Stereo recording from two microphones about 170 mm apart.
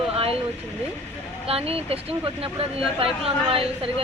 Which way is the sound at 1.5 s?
35° right (ahead or behind).